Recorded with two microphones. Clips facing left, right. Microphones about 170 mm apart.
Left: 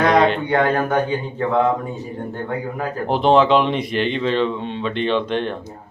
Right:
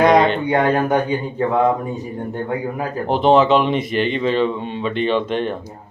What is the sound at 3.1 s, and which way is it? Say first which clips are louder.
Speech: right 1 dB; centre (ahead or behind).